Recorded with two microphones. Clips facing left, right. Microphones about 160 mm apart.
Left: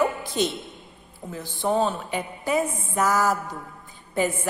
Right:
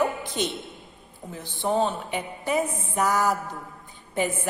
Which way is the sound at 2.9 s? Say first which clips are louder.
Left 1 dB; 45° left (ahead or behind).